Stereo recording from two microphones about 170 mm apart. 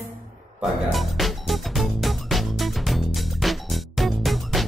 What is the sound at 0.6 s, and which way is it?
Music, centre (ahead or behind).